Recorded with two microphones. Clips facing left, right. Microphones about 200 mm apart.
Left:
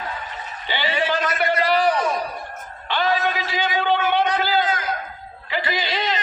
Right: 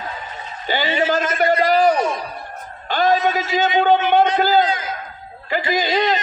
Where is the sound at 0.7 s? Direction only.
45° right (ahead or behind).